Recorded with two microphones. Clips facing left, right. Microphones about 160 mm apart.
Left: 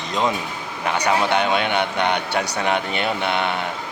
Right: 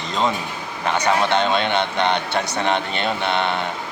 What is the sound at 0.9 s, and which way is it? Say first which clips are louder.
A man's voice: right 1 dB; 10° left (ahead or behind).